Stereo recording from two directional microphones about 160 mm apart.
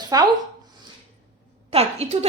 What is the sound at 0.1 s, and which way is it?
Speech, 20° right (ahead or behind).